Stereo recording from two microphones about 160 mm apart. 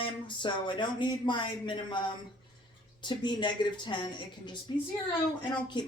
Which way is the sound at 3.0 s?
30° left (ahead or behind).